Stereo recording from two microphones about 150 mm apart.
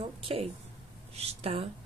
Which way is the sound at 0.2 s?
40° right (ahead or behind).